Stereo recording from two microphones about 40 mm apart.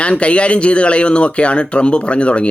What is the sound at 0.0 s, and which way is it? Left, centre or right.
Speech, left.